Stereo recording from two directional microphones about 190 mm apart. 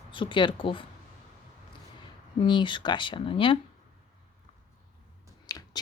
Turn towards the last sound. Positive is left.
turn(degrees=20)  # may be behind; listen again after turning